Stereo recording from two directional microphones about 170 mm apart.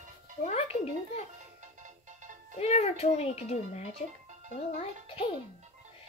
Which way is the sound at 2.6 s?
40° left (ahead or behind).